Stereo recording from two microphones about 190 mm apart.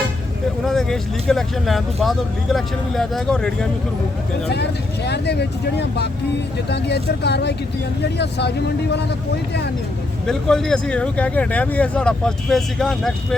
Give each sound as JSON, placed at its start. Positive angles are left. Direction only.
{"t": 0.6, "sound": "speech", "side_deg": 0}
{"t": 4.5, "sound": "speech", "side_deg": 60}
{"t": 10.2, "sound": "speech", "side_deg": 5}